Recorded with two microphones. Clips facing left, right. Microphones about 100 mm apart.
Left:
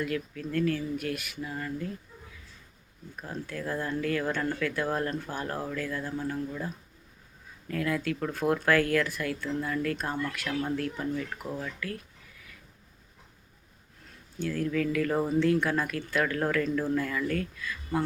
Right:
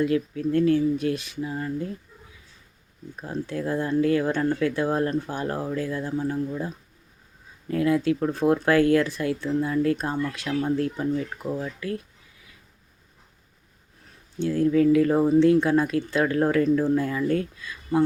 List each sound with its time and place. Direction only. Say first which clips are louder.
0.0 s speech: right 9 dB; 25° right (ahead or behind)
3.2 s speech: right 7 dB; 25° right (ahead or behind)
14.3 s speech: right 8 dB; 25° right (ahead or behind)